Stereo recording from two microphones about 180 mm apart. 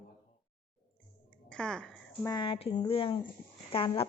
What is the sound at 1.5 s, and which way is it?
Speech, 5° left (ahead or behind).